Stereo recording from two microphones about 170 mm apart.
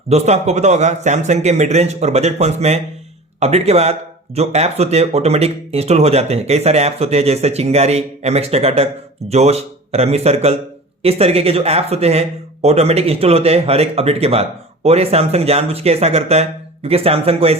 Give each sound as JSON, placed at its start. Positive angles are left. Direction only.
{"t": 0.1, "sound": "speech", "side_deg": -40}